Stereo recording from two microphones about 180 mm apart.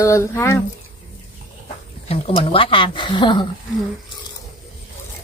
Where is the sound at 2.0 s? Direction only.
35° left (ahead or behind).